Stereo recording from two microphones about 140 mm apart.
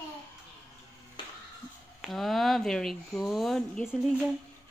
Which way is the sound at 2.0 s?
Centre (ahead or behind).